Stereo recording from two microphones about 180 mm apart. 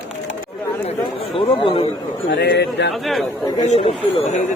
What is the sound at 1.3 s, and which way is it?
Speech, 30° left (ahead or behind).